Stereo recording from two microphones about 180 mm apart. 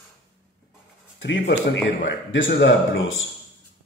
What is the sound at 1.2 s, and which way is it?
A man's voice, 80° left.